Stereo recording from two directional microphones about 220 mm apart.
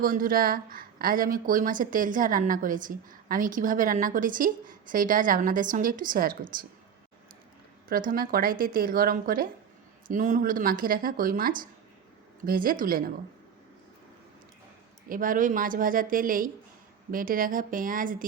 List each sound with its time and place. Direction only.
0.0 s speech: 40° right (ahead or behind)
7.9 s speech: 40° right (ahead or behind)
15.1 s speech: 40° right (ahead or behind)